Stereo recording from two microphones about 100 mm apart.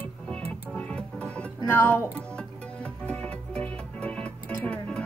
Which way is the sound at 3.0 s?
10° left (ahead or behind).